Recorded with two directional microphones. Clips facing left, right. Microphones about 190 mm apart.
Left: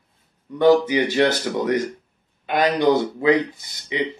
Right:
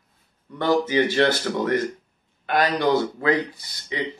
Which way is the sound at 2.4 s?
20° left (ahead or behind).